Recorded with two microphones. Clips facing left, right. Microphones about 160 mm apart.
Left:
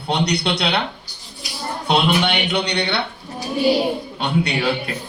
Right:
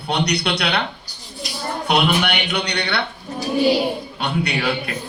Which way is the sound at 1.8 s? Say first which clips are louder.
Left 1 dB; 25° left (ahead or behind).